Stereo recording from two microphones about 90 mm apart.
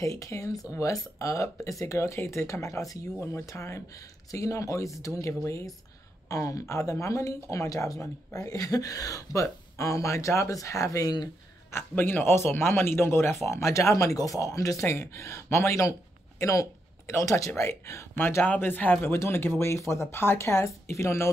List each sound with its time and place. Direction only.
0.0 s speech: 35° left (ahead or behind)
11.7 s speech: 20° left (ahead or behind)
18.2 s speech: 20° left (ahead or behind)